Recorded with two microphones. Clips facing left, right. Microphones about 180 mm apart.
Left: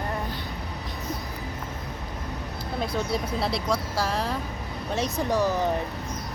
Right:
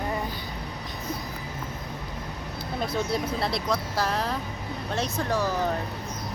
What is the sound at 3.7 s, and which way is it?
Speech, 10° left (ahead or behind).